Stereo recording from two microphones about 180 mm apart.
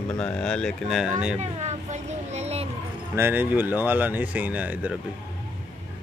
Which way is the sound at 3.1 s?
10° right (ahead or behind).